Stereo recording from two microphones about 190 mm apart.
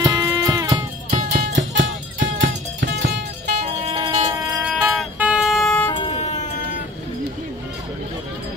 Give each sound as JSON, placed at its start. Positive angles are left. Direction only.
{"t": 0.0, "sound": "music", "side_deg": -20}
{"t": 1.1, "sound": "music", "side_deg": -45}
{"t": 1.6, "sound": "music", "side_deg": -75}
{"t": 3.9, "sound": "music", "side_deg": -20}
{"t": 4.6, "sound": "music", "side_deg": -5}
{"t": 5.9, "sound": "music", "side_deg": 25}